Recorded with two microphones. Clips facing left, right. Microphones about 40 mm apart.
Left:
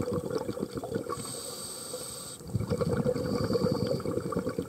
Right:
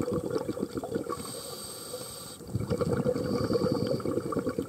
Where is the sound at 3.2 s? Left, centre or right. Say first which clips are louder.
Right 1 dB; centre.